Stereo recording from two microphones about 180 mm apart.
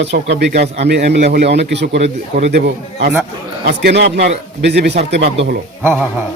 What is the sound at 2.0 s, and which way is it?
Speech, 35° right (ahead or behind).